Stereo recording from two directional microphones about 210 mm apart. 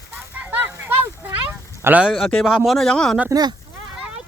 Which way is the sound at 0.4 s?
10° right (ahead or behind).